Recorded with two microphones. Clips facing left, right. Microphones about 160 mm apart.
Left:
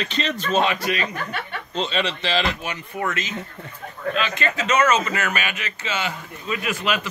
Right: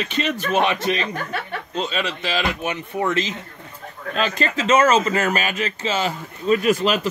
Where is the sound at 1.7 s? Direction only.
5° right (ahead or behind); by 7.0 s 40° right (ahead or behind).